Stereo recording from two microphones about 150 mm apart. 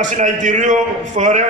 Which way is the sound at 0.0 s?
55° right (ahead or behind).